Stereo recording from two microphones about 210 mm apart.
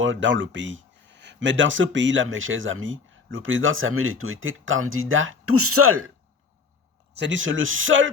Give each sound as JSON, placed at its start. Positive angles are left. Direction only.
{"t": 0.0, "sound": "speech", "side_deg": -65}
{"t": 7.1, "sound": "speech", "side_deg": -60}